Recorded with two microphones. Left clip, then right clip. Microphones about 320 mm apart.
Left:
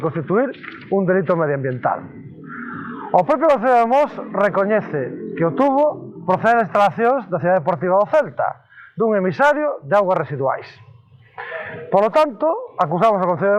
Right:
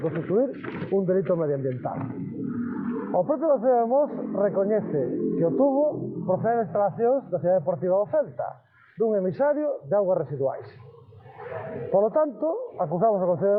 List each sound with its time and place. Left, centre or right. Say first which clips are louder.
0.0 s speech: left 5 dB; left
3.2 s speech: left 8 dB; left
11.9 s speech: left 7 dB; left